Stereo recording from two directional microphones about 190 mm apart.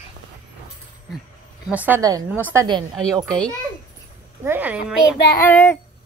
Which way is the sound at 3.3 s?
5° left (ahead or behind).